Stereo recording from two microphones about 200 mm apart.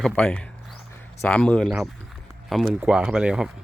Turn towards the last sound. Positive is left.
turn(degrees=-5)  # may be behind; listen again after turning